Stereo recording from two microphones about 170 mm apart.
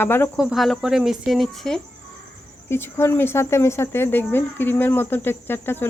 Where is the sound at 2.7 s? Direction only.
15° left (ahead or behind).